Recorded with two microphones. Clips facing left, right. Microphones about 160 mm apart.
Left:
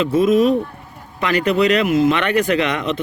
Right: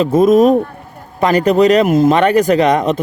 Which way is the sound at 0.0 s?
45° right (ahead or behind).